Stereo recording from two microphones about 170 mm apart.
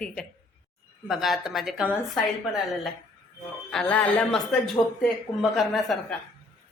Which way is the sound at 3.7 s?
5° left (ahead or behind).